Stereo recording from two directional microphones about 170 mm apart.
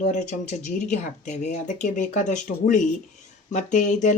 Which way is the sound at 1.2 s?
45° left (ahead or behind).